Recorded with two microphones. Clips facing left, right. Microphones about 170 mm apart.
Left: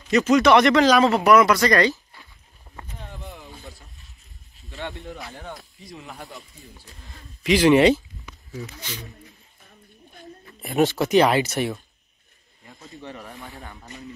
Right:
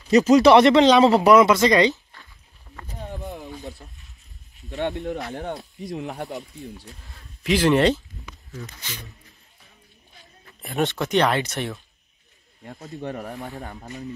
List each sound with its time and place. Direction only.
0.1 s speech: 35° right (ahead or behind)
2.9 s a sound: 40° right (ahead or behind)
4.8 s speech: 20° right (ahead or behind)
5.1 s speech: 65° right (ahead or behind)
7.1 s speech: centre (ahead or behind)
10.6 s speech: centre (ahead or behind)
12.7 s speech: 45° right (ahead or behind)